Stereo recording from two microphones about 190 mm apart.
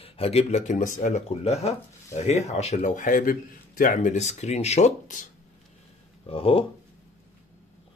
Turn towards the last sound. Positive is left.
turn(degrees=30)  # may be behind; listen again after turning